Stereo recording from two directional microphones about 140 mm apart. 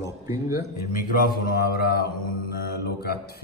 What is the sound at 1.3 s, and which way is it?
Mantra, 90° left.